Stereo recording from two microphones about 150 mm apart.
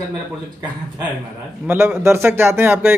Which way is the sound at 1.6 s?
15° right (ahead or behind).